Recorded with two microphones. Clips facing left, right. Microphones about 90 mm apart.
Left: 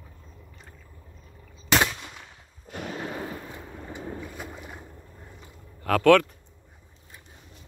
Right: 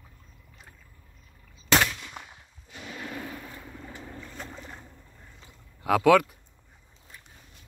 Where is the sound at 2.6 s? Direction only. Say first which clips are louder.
Left 8 dB; 55° left (ahead or behind).